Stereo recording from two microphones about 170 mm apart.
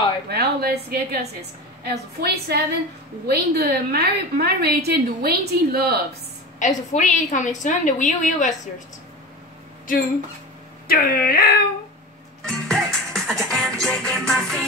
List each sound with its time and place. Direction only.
0.3 s a woman's voice: 65° right (ahead or behind)
6.6 s a woman's voice: 45° left (ahead or behind)
10.9 s speech: 60° left (ahead or behind)
12.4 s music: centre (ahead or behind)